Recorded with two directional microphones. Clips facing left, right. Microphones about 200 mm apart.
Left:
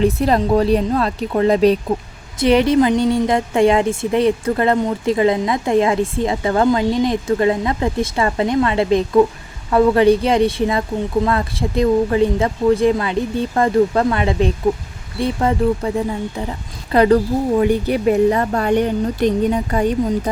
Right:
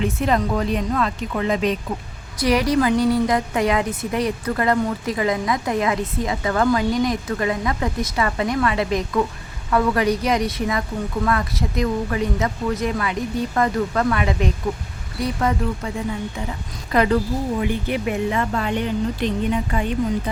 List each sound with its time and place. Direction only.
0.0 s speech: 35° left (ahead or behind)
2.4 s a woman's voice: 25° left (ahead or behind)
16.9 s speech: 35° left (ahead or behind)